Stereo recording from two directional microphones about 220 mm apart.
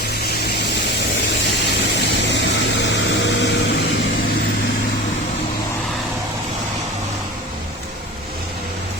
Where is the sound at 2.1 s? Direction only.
55° left (ahead or behind).